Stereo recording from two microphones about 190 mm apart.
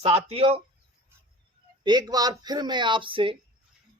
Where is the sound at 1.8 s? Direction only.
20° right (ahead or behind).